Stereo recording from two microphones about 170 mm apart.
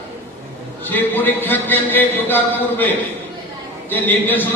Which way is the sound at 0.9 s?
10° left (ahead or behind).